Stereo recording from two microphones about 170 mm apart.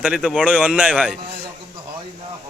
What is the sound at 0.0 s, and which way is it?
Speech, 5° right (ahead or behind).